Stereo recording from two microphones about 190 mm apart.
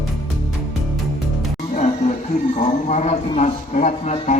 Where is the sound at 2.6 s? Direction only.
35° left (ahead or behind).